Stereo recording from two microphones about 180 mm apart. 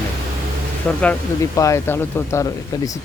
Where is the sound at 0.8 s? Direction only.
5° left (ahead or behind).